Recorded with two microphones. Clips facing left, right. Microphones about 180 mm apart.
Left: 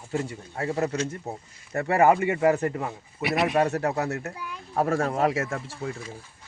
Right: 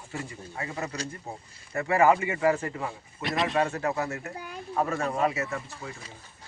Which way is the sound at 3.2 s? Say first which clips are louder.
Left 4 dB; 10° left (ahead or behind).